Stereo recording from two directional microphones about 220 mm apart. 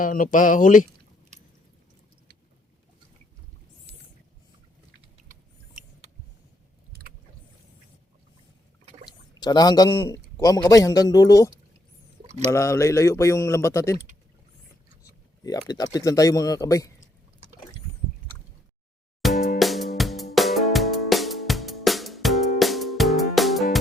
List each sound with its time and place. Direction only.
0.0 s speech: 40° left (ahead or behind)
6.9 s boat: 45° right (ahead or behind)
9.4 s speech: 20° left (ahead or behind)
15.4 s speech: 15° left (ahead or behind)
19.3 s music: 35° left (ahead or behind)
19.5 s music: centre (ahead or behind)